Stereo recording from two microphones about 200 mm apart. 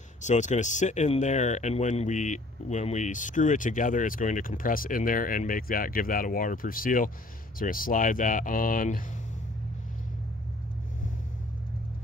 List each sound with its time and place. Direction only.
0.2 s speech: 35° left (ahead or behind)